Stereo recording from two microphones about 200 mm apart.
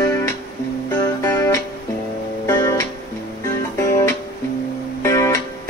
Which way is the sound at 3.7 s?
15° left (ahead or behind).